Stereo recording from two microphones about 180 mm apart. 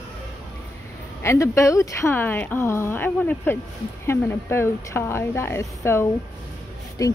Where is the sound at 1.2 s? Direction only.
15° left (ahead or behind).